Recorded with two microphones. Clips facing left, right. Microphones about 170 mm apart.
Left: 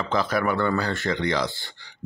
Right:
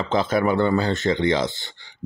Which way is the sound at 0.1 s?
25° right (ahead or behind).